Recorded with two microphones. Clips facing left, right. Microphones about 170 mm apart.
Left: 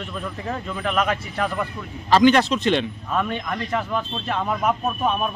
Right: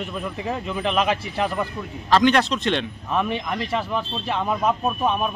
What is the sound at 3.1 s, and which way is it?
Speech, 15° right (ahead or behind).